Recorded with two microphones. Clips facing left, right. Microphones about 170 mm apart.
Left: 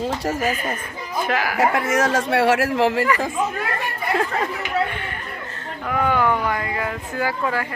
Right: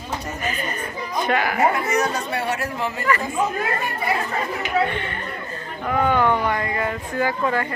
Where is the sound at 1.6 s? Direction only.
90° left.